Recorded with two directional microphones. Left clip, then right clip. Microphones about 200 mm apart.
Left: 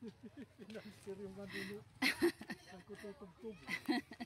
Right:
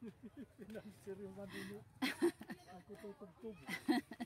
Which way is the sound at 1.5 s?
15° right (ahead or behind).